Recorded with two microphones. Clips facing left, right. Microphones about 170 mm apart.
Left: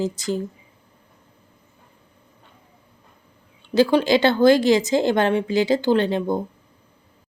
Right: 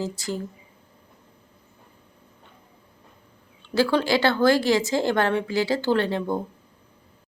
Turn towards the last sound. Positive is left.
turn(degrees=20)  # may be behind; listen again after turning